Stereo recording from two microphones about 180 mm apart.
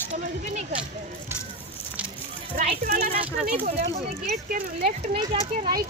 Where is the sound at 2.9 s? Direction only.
55° right (ahead or behind).